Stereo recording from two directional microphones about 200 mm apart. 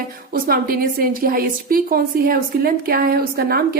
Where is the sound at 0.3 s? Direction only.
45° right (ahead or behind).